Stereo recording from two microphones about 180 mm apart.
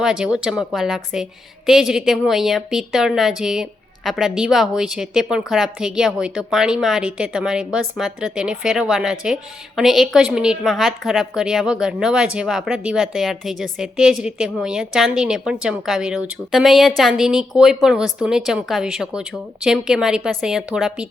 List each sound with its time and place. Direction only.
0.0 s a woman's voice: 5° right (ahead or behind)